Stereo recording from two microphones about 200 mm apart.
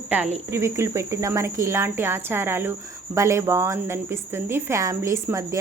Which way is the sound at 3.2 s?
15° right (ahead or behind).